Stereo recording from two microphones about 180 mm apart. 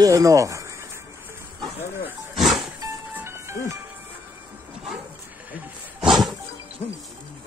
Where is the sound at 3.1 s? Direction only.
15° right (ahead or behind).